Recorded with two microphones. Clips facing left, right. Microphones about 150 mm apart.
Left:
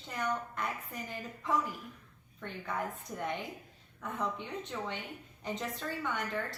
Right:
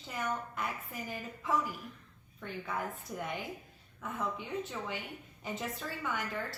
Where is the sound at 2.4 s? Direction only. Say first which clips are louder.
Even; 5° right (ahead or behind).